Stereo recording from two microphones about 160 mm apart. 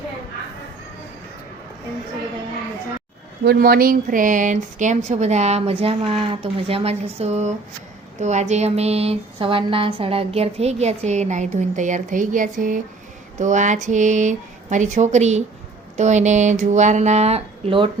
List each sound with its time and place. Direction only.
3.4 s speech: 75° right (ahead or behind); by 17.8 s 35° right (ahead or behind)